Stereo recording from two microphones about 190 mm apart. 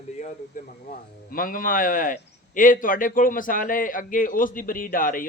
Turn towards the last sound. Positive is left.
turn(degrees=45)  # may be behind; listen again after turning